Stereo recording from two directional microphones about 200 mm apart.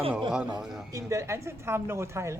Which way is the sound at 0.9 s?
15° right (ahead or behind).